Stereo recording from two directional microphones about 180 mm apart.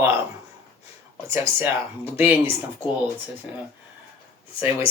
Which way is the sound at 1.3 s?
15° right (ahead or behind).